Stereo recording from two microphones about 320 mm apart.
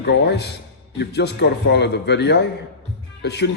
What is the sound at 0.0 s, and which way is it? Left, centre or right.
Speech, left.